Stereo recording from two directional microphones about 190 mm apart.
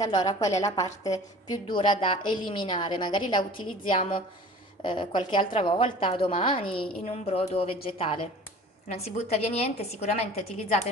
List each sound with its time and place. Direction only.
0.0 s a woman's voice: 20° left (ahead or behind)